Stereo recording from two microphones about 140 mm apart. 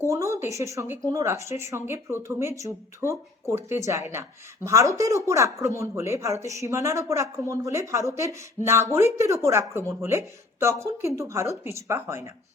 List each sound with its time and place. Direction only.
0.1 s speech: 20° right (ahead or behind)